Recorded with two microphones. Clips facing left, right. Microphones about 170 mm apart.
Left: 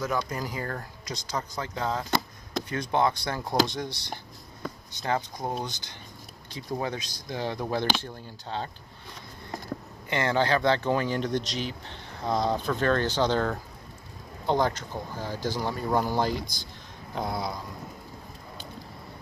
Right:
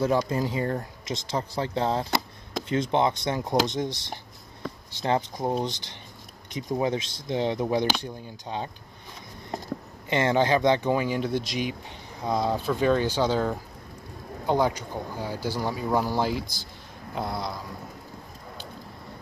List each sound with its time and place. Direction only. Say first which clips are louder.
0.3 s speech: right 6 dB; 25° right (ahead or behind)
7.6 s speech: right 3 dB; 5° right (ahead or behind)
10.0 s speech: right 3 dB; 20° right (ahead or behind); by 16.6 s 5° right (ahead or behind)
17.1 s a sound: even; centre (ahead or behind)